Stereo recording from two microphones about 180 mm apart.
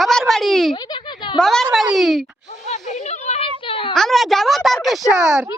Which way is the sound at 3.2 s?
35° left (ahead or behind).